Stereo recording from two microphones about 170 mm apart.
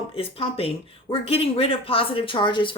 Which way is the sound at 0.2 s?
35° left (ahead or behind).